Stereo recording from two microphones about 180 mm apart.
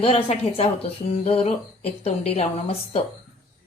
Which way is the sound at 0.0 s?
35° left (ahead or behind).